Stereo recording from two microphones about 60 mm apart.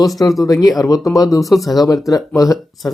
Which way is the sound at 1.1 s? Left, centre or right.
Left.